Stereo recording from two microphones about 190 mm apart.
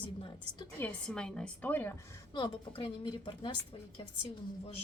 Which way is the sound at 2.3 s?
25° left (ahead or behind).